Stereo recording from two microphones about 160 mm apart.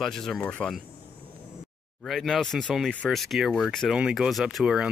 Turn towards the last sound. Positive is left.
turn(degrees=-5)  # may be behind; listen again after turning